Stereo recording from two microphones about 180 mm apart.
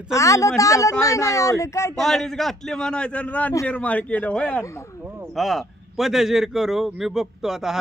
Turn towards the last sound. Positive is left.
turn(degrees=-5)  # may be behind; listen again after turning